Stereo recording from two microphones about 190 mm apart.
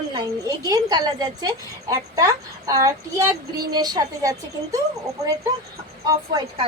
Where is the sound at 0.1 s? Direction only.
20° right (ahead or behind).